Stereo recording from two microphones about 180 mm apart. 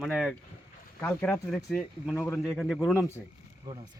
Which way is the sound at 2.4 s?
Centre (ahead or behind).